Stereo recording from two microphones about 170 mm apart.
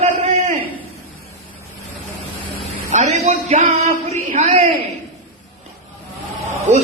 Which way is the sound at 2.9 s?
40° right (ahead or behind).